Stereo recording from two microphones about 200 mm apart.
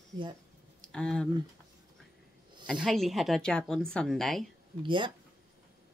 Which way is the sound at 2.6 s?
5° left (ahead or behind).